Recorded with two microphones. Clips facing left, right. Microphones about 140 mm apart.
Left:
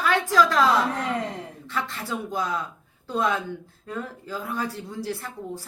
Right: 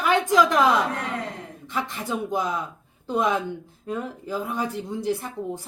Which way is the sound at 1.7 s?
20° right (ahead or behind).